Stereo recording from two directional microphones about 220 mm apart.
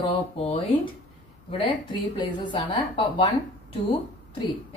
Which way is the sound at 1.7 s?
20° left (ahead or behind).